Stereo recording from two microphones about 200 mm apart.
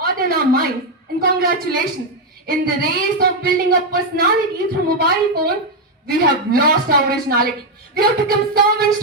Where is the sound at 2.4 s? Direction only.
50° right (ahead or behind).